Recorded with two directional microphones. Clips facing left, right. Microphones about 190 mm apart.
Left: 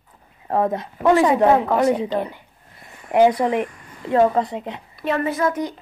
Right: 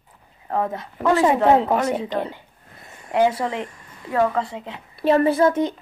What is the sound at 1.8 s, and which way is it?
Speech, 20° left (ahead or behind).